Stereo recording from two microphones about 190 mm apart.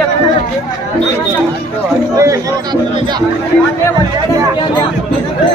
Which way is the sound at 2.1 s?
15° right (ahead or behind).